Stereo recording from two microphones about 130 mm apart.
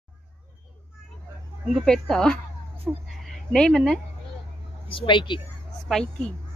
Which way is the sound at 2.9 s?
5° right (ahead or behind).